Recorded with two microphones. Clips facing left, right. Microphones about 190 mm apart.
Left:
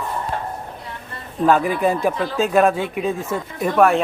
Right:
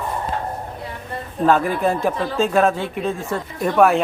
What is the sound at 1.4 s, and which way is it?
Speech, centre (ahead or behind).